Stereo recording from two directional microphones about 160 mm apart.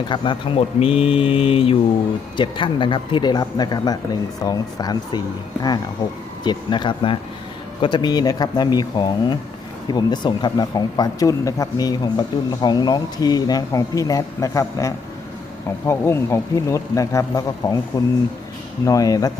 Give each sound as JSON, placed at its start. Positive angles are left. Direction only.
{"t": 0.1, "sound": "speech", "side_deg": 30}
{"t": 18.9, "sound": "speech", "side_deg": 20}